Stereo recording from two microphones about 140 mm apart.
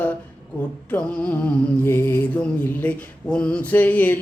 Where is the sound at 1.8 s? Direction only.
15° left (ahead or behind).